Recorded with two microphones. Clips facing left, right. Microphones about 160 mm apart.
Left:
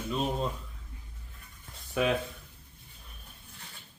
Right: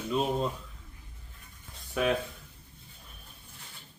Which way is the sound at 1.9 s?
Centre (ahead or behind).